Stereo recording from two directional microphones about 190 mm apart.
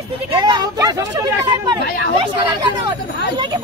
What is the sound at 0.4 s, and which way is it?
Speech, 20° right (ahead or behind).